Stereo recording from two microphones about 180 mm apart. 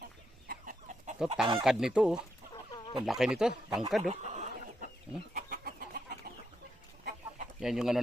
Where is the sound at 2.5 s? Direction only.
25° left (ahead or behind).